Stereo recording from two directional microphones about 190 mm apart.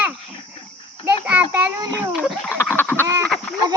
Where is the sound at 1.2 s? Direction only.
10° right (ahead or behind).